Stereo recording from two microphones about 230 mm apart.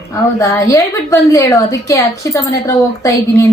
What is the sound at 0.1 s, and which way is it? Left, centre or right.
A woman's voice, centre.